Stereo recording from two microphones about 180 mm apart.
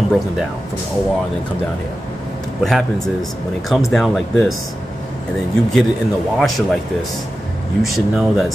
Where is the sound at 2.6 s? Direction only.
Centre (ahead or behind).